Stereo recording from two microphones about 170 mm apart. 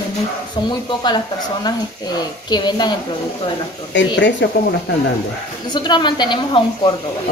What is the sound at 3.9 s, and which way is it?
Speech, 90° left.